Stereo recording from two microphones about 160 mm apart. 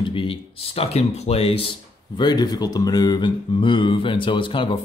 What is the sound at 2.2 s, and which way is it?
Speech, 25° left (ahead or behind).